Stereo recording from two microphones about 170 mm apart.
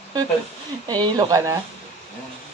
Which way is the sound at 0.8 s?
25° right (ahead or behind).